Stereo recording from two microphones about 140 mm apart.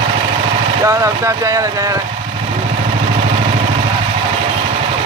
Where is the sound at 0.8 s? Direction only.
25° right (ahead or behind).